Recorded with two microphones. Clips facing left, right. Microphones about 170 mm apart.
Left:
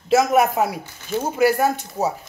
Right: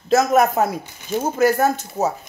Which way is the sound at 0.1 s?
10° left (ahead or behind).